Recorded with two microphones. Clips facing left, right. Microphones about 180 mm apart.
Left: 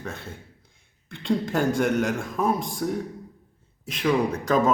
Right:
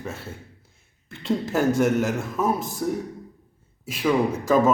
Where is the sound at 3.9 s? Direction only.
5° right (ahead or behind).